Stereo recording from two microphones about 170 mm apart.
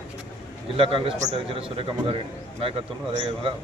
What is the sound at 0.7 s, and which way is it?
Speech, 30° right (ahead or behind).